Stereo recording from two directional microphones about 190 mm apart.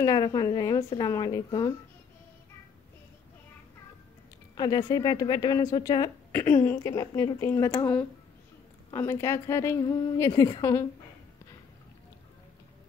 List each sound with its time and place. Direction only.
0.0 s a woman's voice: 20° left (ahead or behind)
4.6 s a woman's voice: 20° left (ahead or behind)